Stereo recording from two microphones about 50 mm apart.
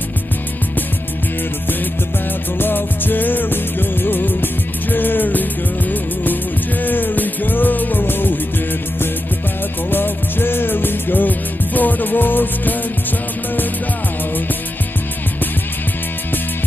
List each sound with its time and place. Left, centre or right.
2.6 s music: left
9.8 s music: left